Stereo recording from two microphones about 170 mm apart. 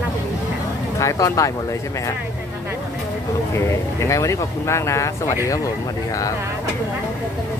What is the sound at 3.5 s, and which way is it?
Speech, 15° left (ahead or behind).